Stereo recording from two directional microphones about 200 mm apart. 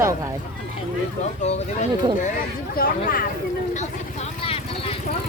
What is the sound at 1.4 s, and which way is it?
Speech, 35° left (ahead or behind).